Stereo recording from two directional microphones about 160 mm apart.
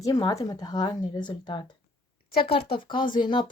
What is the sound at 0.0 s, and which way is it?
Speech, 25° left (ahead or behind).